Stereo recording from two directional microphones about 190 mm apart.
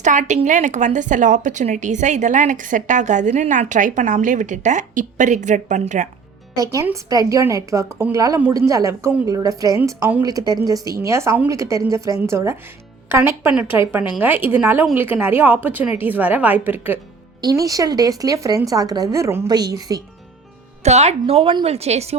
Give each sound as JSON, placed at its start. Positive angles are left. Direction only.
{"t": 0.0, "sound": "speech", "side_deg": -40}
{"t": 6.6, "sound": "a woman's voice", "side_deg": -15}
{"t": 20.8, "sound": "speech", "side_deg": -35}